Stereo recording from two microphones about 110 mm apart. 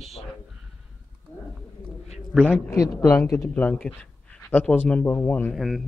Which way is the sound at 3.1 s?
30° left (ahead or behind).